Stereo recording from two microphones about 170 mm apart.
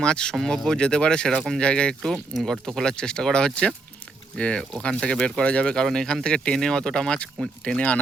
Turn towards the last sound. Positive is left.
turn(degrees=5)  # may be behind; listen again after turning